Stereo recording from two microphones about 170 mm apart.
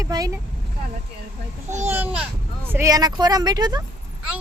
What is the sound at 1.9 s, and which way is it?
A child's voice, 10° right (ahead or behind).